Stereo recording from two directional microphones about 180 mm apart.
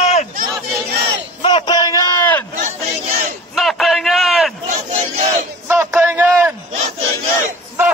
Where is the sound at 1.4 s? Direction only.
25° left (ahead or behind).